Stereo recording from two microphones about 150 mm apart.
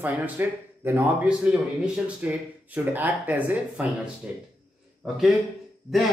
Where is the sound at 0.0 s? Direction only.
10° right (ahead or behind).